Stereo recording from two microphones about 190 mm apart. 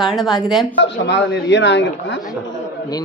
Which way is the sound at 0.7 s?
65° left (ahead or behind).